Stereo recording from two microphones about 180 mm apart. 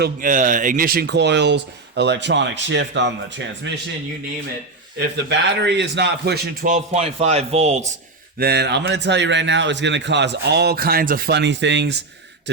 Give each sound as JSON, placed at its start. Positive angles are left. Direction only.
{"t": 0.0, "sound": "speech", "side_deg": -50}
{"t": 4.9, "sound": "a man's voice", "side_deg": -75}
{"t": 8.4, "sound": "speech", "side_deg": -65}